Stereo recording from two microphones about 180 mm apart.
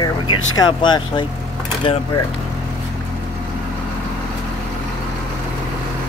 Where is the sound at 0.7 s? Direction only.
25° left (ahead or behind).